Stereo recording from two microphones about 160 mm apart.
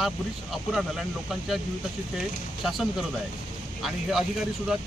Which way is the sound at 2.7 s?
Centre (ahead or behind).